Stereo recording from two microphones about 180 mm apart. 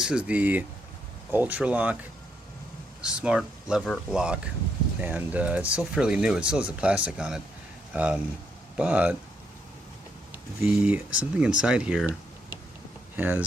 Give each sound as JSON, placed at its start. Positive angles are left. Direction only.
{"t": 0.0, "sound": "speech", "side_deg": -5}
{"t": 3.0, "sound": "speech", "side_deg": -5}
{"t": 10.3, "sound": "speech", "side_deg": -5}